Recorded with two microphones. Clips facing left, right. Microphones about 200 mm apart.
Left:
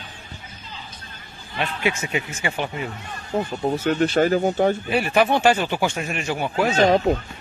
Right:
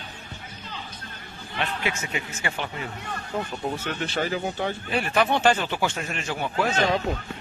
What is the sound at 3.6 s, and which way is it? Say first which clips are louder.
Speech: left 9 dB; 40° left (ahead or behind).